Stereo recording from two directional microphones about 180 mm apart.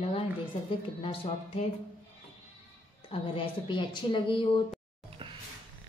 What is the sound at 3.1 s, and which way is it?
A woman's voice, 30° left (ahead or behind).